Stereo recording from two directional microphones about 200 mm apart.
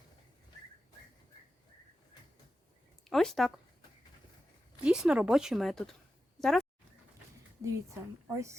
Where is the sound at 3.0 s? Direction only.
Centre (ahead or behind).